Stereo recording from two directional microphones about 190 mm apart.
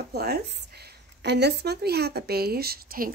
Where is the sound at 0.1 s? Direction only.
55° right (ahead or behind).